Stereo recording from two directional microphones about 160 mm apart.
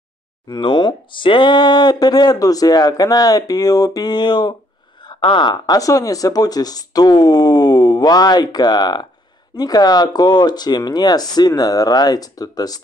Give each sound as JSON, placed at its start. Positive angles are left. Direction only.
{"t": 0.5, "sound": "speech", "side_deg": 30}